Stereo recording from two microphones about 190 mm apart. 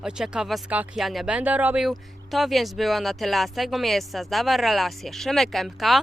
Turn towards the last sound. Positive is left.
turn(degrees=0)  # may be behind; listen again after turning